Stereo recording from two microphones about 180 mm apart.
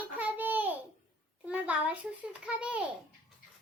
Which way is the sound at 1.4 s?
10° right (ahead or behind).